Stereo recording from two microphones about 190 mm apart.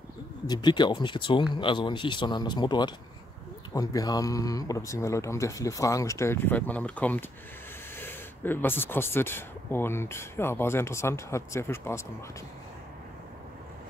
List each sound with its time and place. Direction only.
0.5 s speech: 25° left (ahead or behind)